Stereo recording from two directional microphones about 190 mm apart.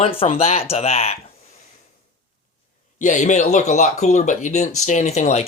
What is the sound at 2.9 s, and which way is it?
Speech, 40° left (ahead or behind).